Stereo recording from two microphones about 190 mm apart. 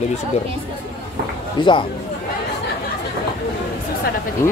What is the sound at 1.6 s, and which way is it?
Speech, 25° left (ahead or behind).